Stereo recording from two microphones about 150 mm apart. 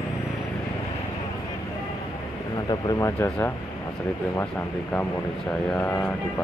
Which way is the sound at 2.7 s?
20° left (ahead or behind).